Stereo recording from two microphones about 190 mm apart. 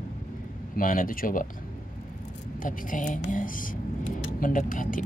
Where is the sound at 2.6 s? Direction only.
45° left (ahead or behind).